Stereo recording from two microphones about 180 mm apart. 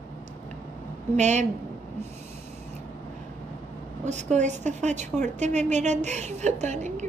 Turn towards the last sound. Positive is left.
turn(degrees=-40)  # may be behind; listen again after turning